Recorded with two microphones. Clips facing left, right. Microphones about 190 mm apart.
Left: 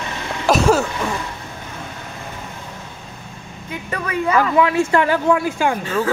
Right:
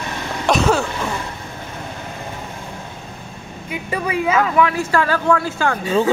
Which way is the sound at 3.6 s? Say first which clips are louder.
Right 3 dB; 15° right (ahead or behind).